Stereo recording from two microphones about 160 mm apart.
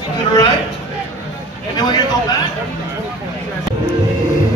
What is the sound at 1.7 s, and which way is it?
Speech, 25° left (ahead or behind).